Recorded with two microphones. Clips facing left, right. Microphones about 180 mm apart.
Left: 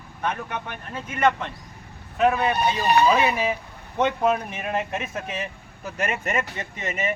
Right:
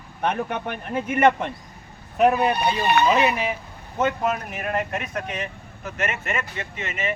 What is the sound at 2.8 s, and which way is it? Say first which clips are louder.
Speech: left 1 dB; 35° left (ahead or behind).